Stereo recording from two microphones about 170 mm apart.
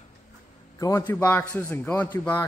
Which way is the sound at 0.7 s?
20° left (ahead or behind).